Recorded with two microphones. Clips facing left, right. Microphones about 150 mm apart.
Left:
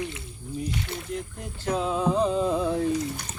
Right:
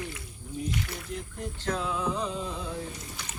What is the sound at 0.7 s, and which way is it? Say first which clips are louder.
Speech: left 2 dB; 25° left (ahead or behind).